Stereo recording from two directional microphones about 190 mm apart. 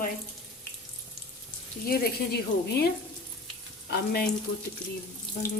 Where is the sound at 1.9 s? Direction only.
55° left (ahead or behind).